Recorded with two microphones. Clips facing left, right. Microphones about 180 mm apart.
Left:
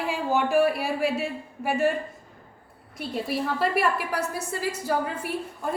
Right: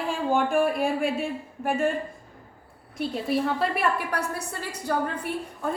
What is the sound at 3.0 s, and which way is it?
A woman's voice, centre (ahead or behind).